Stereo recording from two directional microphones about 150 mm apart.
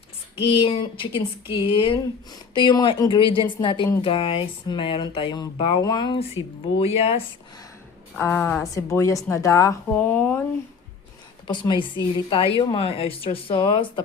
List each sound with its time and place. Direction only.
0.3 s speech: 35° left (ahead or behind)
6.1 s speech: 40° left (ahead or behind)
8.2 s a woman's voice: 15° left (ahead or behind)
10.0 s speech: 10° left (ahead or behind)
11.4 s speech: 30° left (ahead or behind)